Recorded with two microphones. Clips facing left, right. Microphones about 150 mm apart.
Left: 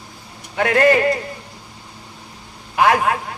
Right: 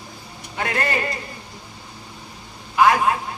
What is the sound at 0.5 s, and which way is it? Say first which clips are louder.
Speech: left 9 dB; 55° left (ahead or behind).